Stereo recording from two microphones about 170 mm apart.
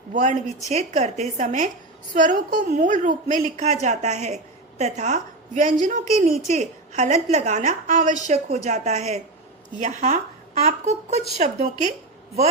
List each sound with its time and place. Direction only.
0.1 s a woman's voice: 45° right (ahead or behind)